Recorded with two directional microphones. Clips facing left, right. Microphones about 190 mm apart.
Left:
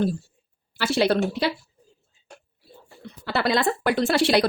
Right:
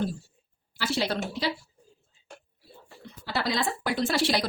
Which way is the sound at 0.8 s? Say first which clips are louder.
Left 8 dB; 65° left (ahead or behind).